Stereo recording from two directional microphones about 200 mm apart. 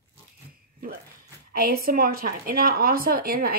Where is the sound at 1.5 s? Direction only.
45° right (ahead or behind).